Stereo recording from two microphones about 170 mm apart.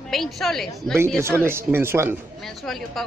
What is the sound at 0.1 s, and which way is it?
Speech, centre (ahead or behind).